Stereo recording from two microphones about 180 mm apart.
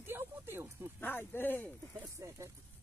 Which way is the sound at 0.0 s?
10° right (ahead or behind).